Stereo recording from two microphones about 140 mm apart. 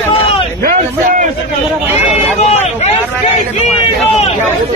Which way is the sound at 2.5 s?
50° left (ahead or behind).